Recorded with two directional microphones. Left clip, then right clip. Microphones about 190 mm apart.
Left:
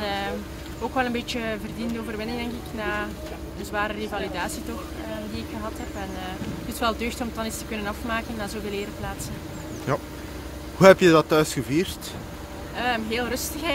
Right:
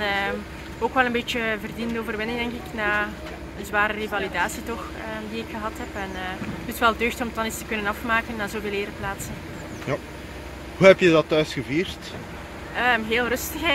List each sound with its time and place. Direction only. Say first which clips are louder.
0.0 s vehicle: right 4 dB; 5° right (ahead or behind)
0.9 s speech: right 4 dB; 5° right (ahead or behind)
6.8 s speech: right 5 dB; 5° right (ahead or behind)
9.9 s speech: left 2 dB; 20° left (ahead or behind)
12.7 s speech: right 5 dB; 5° right (ahead or behind)